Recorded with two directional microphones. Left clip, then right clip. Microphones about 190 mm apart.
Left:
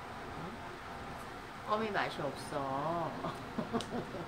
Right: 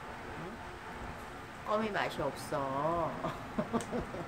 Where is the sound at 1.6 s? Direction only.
60° right (ahead or behind).